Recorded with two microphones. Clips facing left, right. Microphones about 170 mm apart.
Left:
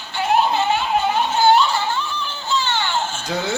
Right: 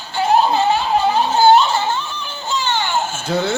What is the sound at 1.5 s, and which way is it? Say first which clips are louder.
Music: right 3 dB; 20° right (ahead or behind).